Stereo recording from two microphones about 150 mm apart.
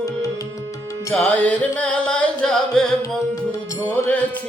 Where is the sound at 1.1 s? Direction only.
10° left (ahead or behind).